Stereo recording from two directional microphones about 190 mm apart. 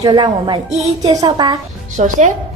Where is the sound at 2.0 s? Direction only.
40° right (ahead or behind).